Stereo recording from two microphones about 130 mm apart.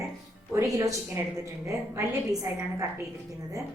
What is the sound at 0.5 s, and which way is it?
A woman's voice, 25° right (ahead or behind).